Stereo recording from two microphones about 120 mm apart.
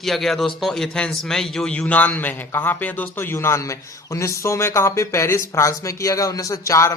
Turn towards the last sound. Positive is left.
turn(degrees=25)  # may be behind; listen again after turning